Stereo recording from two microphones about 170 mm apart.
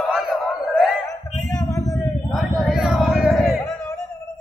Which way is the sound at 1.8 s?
Centre (ahead or behind).